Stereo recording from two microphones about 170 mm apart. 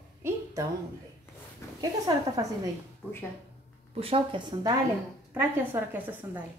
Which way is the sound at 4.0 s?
30° right (ahead or behind).